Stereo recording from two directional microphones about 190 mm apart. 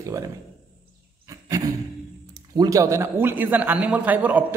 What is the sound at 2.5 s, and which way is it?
A man's voice, 20° right (ahead or behind).